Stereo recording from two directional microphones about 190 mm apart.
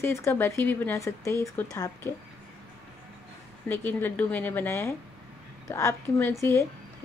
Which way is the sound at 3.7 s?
10° left (ahead or behind).